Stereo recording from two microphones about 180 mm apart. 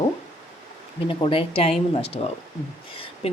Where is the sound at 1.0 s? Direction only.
30° left (ahead or behind).